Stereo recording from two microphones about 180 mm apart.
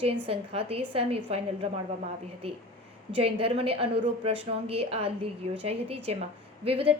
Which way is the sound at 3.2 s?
30° right (ahead or behind).